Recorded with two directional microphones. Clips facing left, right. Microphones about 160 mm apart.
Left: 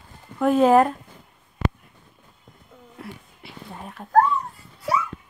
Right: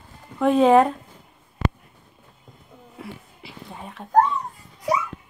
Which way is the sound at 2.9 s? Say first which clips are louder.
Right 1 dB; centre (ahead or behind).